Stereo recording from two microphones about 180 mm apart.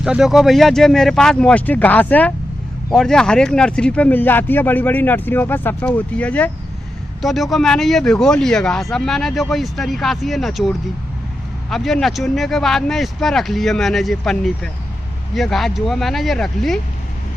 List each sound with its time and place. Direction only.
0.0 s speech: 5° right (ahead or behind)